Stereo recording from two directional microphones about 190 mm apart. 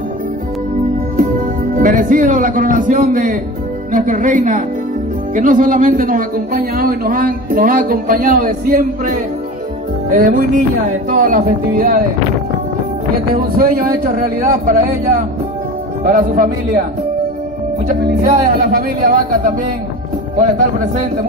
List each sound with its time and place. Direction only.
1.8 s a man's voice: 45° right (ahead or behind)
13.3 s a man's voice: 50° right (ahead or behind)
17.8 s a man's voice: 45° right (ahead or behind)